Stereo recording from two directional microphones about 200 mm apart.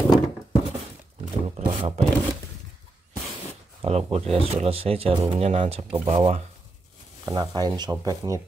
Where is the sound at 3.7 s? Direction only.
30° right (ahead or behind).